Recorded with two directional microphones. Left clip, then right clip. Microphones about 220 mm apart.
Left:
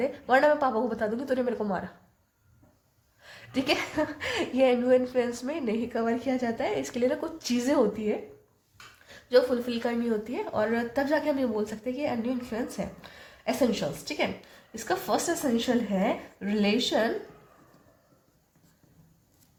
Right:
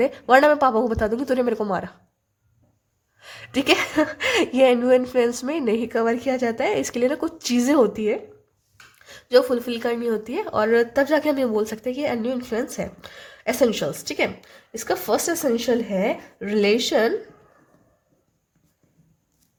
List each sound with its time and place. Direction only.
0.0 s a woman's voice: 40° right (ahead or behind)
3.2 s a woman's voice: 40° right (ahead or behind)